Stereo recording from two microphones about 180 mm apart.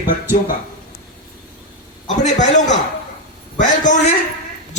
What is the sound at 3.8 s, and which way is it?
Speech, 45° left (ahead or behind).